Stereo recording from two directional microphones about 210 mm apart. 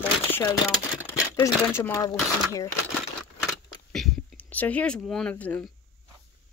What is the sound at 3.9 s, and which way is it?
Speech, 5° left (ahead or behind).